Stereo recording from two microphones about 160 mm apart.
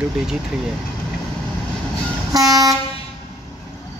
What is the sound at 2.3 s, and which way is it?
Train, 20° right (ahead or behind).